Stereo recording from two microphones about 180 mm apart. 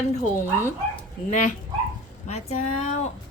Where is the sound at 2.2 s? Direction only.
40° left (ahead or behind).